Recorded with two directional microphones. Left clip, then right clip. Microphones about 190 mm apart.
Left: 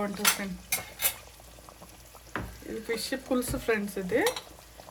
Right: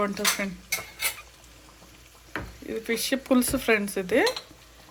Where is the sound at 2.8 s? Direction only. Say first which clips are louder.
Right 6 dB; 20° right (ahead or behind).